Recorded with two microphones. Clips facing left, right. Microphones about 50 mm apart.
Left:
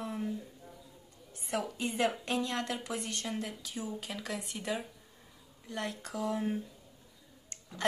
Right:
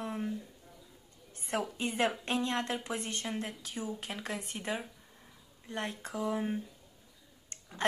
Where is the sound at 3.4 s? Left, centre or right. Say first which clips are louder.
Right 1 dB; right; by 6.5 s centre.